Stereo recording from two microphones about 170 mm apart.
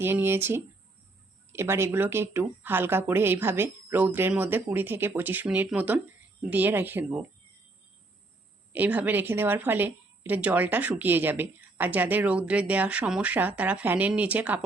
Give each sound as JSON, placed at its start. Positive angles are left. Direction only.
{"t": 0.0, "sound": "a woman's voice", "side_deg": -15}
{"t": 8.7, "sound": "a woman's voice", "side_deg": -10}